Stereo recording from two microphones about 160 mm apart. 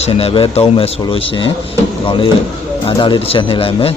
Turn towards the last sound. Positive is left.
turn(degrees=35)  # may be behind; listen again after turning